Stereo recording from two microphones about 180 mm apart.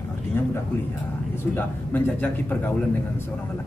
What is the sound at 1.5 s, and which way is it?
A man's voice, 10° left (ahead or behind).